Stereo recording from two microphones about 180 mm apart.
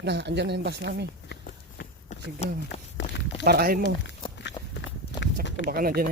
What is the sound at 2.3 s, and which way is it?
Speech, 35° left (ahead or behind).